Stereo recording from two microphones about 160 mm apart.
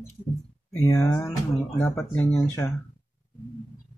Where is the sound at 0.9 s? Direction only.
20° left (ahead or behind).